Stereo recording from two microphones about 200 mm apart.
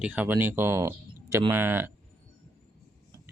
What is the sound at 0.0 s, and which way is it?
Speech, 10° right (ahead or behind).